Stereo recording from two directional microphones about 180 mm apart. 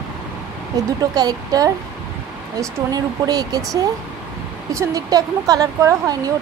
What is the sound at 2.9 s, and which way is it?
Speech, 20° right (ahead or behind).